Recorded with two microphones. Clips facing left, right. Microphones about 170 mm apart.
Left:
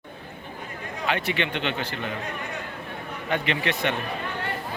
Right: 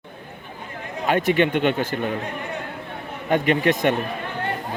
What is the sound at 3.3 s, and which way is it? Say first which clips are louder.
Speech: right 8 dB; 45° right (ahead or behind).